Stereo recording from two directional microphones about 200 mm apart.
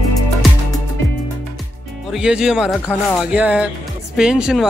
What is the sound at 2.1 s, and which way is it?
Speech, 5° right (ahead or behind).